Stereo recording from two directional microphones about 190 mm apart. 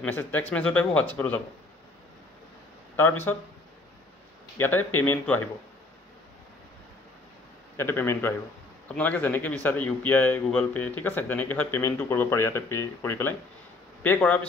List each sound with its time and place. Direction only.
0.0 s a man's voice: 10° left (ahead or behind)
3.0 s a man's voice: 10° left (ahead or behind)
4.6 s a man's voice: 10° left (ahead or behind)
7.7 s a man's voice: 10° left (ahead or behind)